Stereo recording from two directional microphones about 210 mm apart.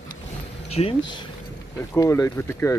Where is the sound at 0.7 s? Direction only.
30° left (ahead or behind).